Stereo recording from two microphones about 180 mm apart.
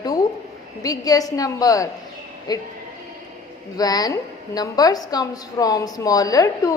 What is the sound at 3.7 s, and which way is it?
A woman's voice, 20° left (ahead or behind).